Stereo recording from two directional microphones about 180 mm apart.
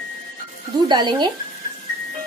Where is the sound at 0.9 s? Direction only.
25° right (ahead or behind).